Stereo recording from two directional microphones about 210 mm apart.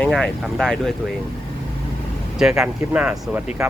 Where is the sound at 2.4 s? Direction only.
5° right (ahead or behind).